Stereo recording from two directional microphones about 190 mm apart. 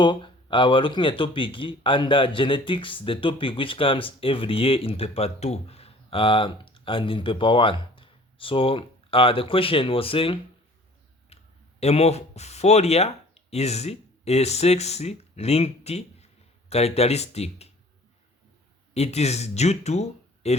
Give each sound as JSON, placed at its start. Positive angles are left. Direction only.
{"t": 0.0, "sound": "speech", "side_deg": 25}
{"t": 11.3, "sound": "clicking", "side_deg": 35}
{"t": 11.8, "sound": "speech", "side_deg": 35}
{"t": 18.9, "sound": "speech", "side_deg": 35}